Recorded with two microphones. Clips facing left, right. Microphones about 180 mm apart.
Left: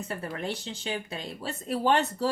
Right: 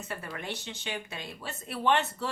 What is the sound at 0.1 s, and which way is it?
Speech, 35° left (ahead or behind).